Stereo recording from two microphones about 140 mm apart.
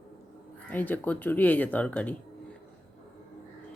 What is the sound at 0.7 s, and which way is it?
Speech, 10° left (ahead or behind).